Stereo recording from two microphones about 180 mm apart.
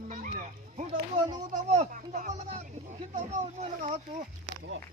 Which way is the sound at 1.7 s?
45° right (ahead or behind).